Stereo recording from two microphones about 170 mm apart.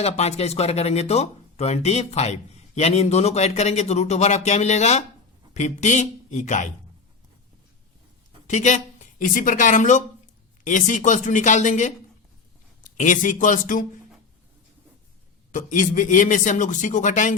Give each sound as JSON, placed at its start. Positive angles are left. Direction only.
{"t": 0.0, "sound": "a man's voice", "side_deg": 35}
{"t": 8.4, "sound": "a man's voice", "side_deg": 45}
{"t": 15.5, "sound": "a man's voice", "side_deg": 50}